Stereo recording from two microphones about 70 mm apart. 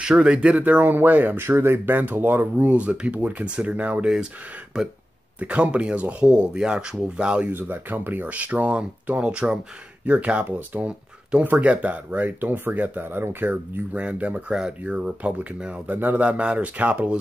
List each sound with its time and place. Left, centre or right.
0.0 s speech: centre; by 2.8 s right
2.8 s speech: centre
7.5 s speech: right